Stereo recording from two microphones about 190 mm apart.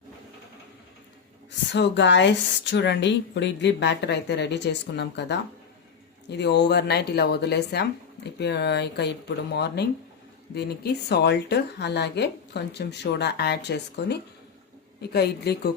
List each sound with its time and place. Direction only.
1.7 s a woman's voice: 70° left (ahead or behind)